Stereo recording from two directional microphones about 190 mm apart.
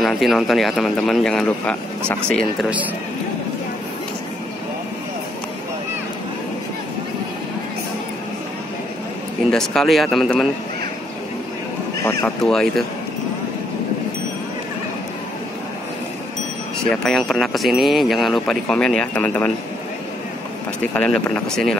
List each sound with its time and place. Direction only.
0.0 s speech: centre (ahead or behind)
9.5 s speech: centre (ahead or behind)
12.0 s speech: 15° left (ahead or behind)
12.4 s speech: centre (ahead or behind)
16.9 s speech: 5° left (ahead or behind)
20.9 s speech: 5° left (ahead or behind)